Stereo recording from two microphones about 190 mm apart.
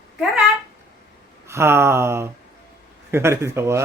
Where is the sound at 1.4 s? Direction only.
15° right (ahead or behind).